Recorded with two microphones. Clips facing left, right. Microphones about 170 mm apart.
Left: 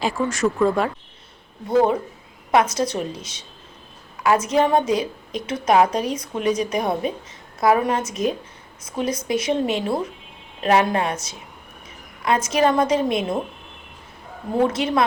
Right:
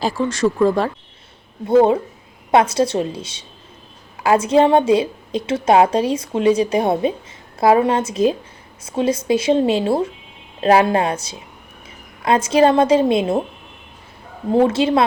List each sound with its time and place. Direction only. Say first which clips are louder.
0.0 s a woman's voice: right 3 dB; 30° right (ahead or behind)
1.6 s a woman's voice: right 5 dB; 25° right (ahead or behind)
14.5 s a woman's voice: right 5 dB; 30° right (ahead or behind)